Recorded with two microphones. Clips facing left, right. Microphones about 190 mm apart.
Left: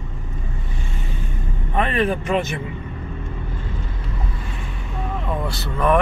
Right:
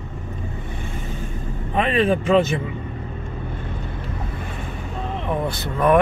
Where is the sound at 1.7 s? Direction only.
25° right (ahead or behind).